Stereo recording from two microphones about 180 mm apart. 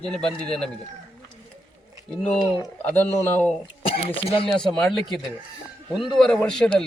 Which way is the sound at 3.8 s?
30° left (ahead or behind).